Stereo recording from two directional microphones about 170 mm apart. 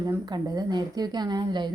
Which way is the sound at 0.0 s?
20° right (ahead or behind).